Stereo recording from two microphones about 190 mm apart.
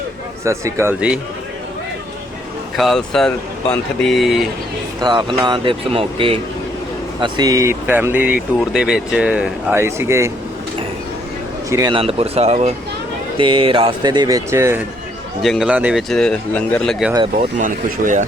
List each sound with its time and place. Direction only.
0.4 s speech: 15° right (ahead or behind)
2.7 s speech: centre (ahead or behind)
4.9 s speech: 25° right (ahead or behind)
11.7 s speech: 20° right (ahead or behind)
15.4 s speech: centre (ahead or behind)
17.6 s speech: 40° right (ahead or behind)